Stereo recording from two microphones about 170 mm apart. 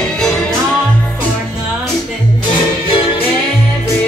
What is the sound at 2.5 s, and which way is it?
Music, 30° left (ahead or behind).